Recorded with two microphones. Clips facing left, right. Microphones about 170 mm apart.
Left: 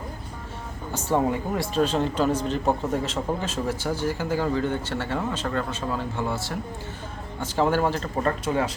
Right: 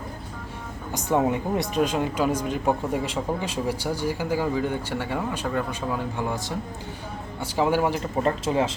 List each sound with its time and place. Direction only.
1.1 s speech: 20° right (ahead or behind)
8.4 s speech: 25° right (ahead or behind)